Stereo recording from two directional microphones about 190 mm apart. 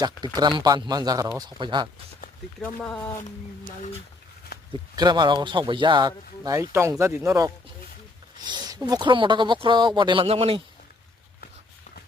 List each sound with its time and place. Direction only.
0.3 s speech: 20° right (ahead or behind)
2.6 s speech: 5° left (ahead or behind)
4.7 s speech: 25° right (ahead or behind)